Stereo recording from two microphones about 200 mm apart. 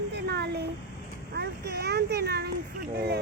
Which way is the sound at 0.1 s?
55° right (ahead or behind).